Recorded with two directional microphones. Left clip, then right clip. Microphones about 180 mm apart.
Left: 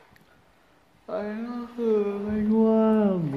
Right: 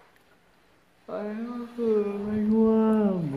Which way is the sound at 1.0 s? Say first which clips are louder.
Left 2 dB; 15° left (ahead or behind).